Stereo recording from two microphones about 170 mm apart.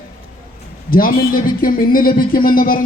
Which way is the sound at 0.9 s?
60° left (ahead or behind).